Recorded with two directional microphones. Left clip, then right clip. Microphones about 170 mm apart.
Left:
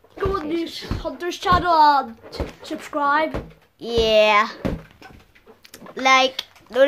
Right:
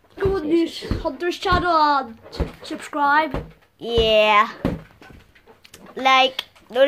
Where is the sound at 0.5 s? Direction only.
35° left (ahead or behind).